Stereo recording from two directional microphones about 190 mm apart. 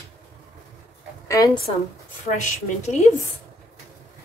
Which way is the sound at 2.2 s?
40° left (ahead or behind).